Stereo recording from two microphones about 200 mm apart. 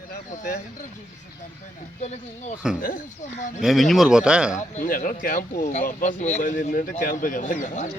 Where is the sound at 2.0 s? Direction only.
35° left (ahead or behind).